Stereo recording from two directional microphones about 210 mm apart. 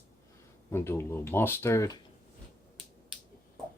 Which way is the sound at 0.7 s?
10° left (ahead or behind).